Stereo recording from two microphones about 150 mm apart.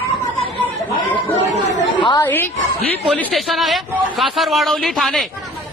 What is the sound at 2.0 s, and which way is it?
Speech, 30° left (ahead or behind).